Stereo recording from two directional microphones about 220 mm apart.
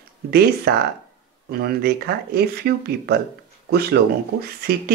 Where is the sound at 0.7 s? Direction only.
45° right (ahead or behind).